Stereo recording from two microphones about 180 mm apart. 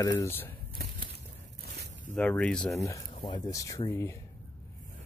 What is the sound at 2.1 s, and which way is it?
Speech, 5° left (ahead or behind).